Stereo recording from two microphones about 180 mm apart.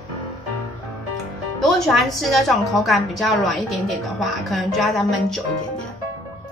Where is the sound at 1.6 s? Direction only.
Centre (ahead or behind).